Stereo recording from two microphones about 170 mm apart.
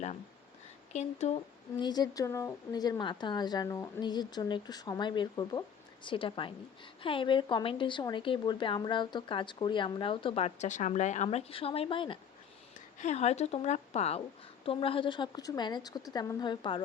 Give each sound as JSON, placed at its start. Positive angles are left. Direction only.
{"t": 0.9, "sound": "speech", "side_deg": 40}
{"t": 1.8, "sound": "a woman's voice", "side_deg": 25}
{"t": 13.0, "sound": "a woman's voice", "side_deg": 40}